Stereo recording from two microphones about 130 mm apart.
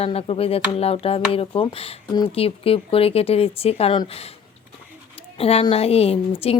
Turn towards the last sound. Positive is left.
turn(degrees=50)  # may be behind; listen again after turning